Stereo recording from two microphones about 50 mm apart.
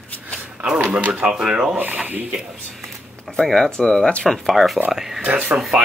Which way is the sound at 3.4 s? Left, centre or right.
Centre.